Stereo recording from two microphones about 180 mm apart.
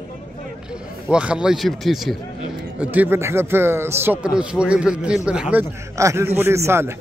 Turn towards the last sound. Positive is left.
turn(degrees=-15)  # may be behind; listen again after turning